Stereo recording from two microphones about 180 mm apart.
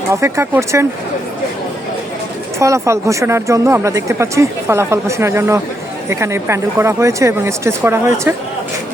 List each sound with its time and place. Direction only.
0.1 s speech: 15° right (ahead or behind)
2.6 s speech: 15° right (ahead or behind)